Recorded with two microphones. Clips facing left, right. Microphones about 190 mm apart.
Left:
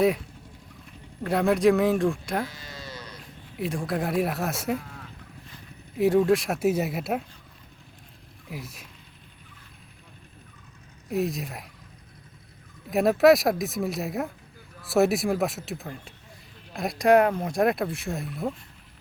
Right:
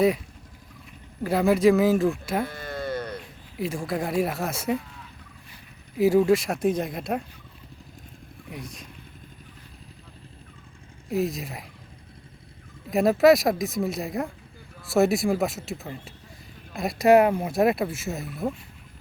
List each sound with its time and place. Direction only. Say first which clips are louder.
1.2 s speech: right 1 dB; centre (ahead or behind)
2.5 s sheep: right 11 dB; 55° right (ahead or behind)
3.6 s speech: even; centre (ahead or behind)
6.0 s speech: right 1 dB; centre (ahead or behind)
8.4 s speech: even; 5° left (ahead or behind)
11.1 s speech: right 1 dB; centre (ahead or behind)
12.9 s speech: right 1 dB; centre (ahead or behind)